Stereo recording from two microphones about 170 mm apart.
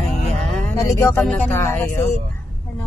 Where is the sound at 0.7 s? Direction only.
15° left (ahead or behind).